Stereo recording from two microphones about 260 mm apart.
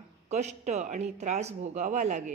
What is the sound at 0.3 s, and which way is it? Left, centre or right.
Speech, right.